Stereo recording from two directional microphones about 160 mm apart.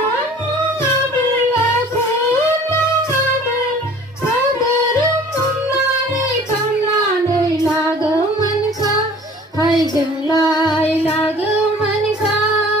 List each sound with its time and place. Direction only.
10.2 s female singing: 25° left (ahead or behind)